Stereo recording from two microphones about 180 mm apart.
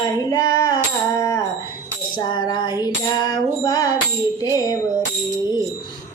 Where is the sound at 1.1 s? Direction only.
20° left (ahead or behind).